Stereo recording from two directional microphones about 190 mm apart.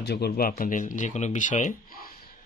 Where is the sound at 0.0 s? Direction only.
60° left (ahead or behind).